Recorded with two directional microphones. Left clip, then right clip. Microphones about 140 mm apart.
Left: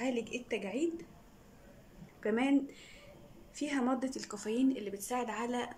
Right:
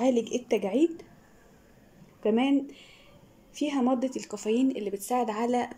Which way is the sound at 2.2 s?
25° right (ahead or behind).